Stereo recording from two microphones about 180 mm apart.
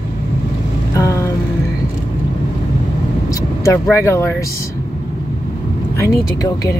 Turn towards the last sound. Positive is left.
turn(degrees=20)  # may be behind; listen again after turning